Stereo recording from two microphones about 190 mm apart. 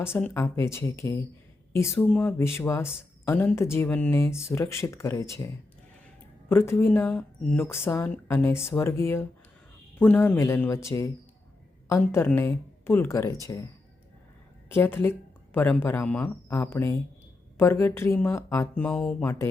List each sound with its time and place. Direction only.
0.0 s speech: 10° left (ahead or behind)
6.5 s speech: 15° left (ahead or behind)
14.7 s speech: 10° left (ahead or behind)
18.9 s speech: 5° left (ahead or behind)